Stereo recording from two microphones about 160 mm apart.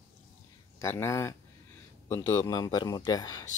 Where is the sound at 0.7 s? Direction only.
15° left (ahead or behind).